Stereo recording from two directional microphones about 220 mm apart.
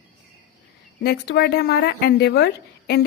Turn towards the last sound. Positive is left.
turn(degrees=45)  # may be behind; listen again after turning